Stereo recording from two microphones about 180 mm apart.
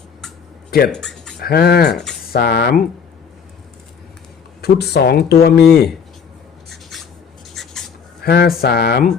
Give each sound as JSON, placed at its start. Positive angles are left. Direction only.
{"t": 0.9, "sound": "speech", "side_deg": 5}
{"t": 1.4, "sound": "speech", "side_deg": 60}
{"t": 4.6, "sound": "speech", "side_deg": 60}
{"t": 6.7, "sound": "writing", "side_deg": 0}
{"t": 7.5, "sound": "a sound", "side_deg": 0}
{"t": 8.2, "sound": "speech", "side_deg": 60}